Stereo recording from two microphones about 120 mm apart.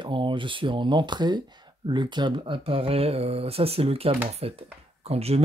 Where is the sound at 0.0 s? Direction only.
45° right (ahead or behind).